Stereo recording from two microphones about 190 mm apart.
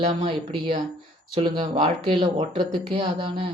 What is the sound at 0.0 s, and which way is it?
Speech, 30° right (ahead or behind).